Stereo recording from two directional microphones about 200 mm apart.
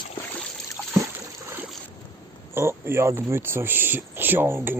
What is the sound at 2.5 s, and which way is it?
Speech, 10° right (ahead or behind).